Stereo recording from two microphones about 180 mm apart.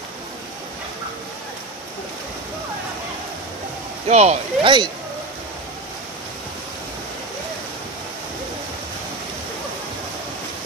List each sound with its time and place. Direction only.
4.1 s speech: 40° right (ahead or behind)